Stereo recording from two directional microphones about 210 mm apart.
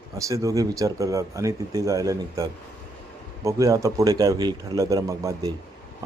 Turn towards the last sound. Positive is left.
turn(degrees=-15)  # may be behind; listen again after turning